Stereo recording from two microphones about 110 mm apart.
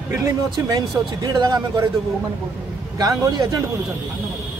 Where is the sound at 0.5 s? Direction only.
35° right (ahead or behind).